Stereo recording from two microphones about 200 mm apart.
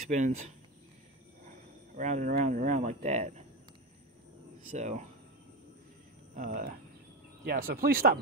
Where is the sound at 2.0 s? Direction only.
40° right (ahead or behind).